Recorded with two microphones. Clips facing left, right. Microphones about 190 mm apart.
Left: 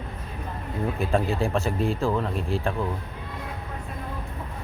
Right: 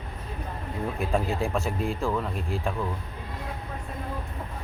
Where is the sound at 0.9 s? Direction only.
Centre (ahead or behind).